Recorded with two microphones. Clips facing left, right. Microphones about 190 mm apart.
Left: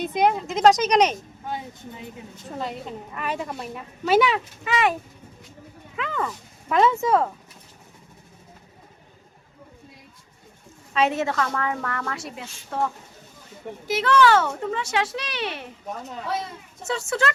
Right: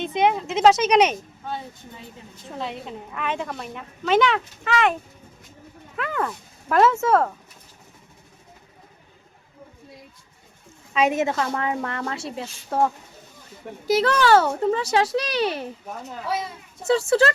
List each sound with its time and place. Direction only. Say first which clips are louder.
0.0 s a woman's voice: even; centre (ahead or behind)
2.6 s a woman's voice: even; centre (ahead or behind)
6.0 s a woman's voice: right 2 dB; 5° right (ahead or behind)
10.9 s a woman's voice: right 1 dB; 15° right (ahead or behind)
12.7 s speech: right 5 dB; 40° right (ahead or behind)
16.8 s speech: right 7 dB; 35° right (ahead or behind)